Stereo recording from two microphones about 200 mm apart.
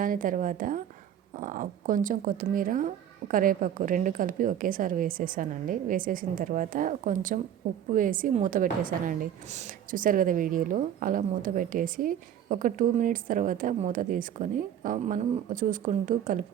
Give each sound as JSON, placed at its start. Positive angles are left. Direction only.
{"t": 0.0, "sound": "a woman's voice", "side_deg": -45}